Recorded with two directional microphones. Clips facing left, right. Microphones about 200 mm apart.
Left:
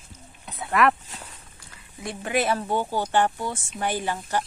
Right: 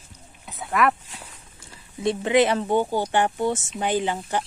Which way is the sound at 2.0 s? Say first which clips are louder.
Right 7 dB; 25° right (ahead or behind).